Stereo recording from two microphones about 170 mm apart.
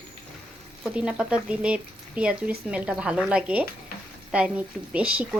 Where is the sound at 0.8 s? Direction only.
5° right (ahead or behind).